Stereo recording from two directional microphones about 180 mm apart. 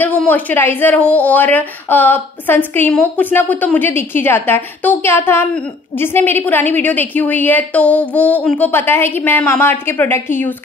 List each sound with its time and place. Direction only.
0.0 s a woman's voice: 10° left (ahead or behind)